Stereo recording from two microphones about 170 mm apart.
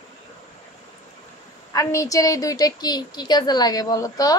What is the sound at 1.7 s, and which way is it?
A woman's voice, 20° left (ahead or behind).